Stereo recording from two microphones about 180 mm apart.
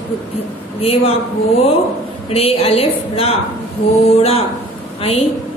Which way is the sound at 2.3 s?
35° left (ahead or behind).